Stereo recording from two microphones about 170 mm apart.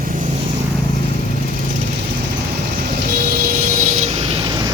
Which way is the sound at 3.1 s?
55° right (ahead or behind).